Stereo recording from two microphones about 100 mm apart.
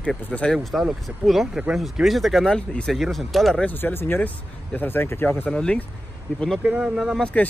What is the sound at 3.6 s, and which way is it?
Speech, 20° left (ahead or behind).